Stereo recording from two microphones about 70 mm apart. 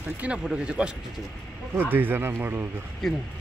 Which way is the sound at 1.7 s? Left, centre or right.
Right.